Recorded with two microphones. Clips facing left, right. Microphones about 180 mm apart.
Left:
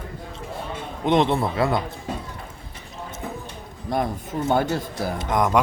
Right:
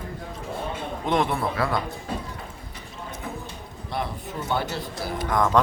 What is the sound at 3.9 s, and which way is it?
Speech, 45° left (ahead or behind).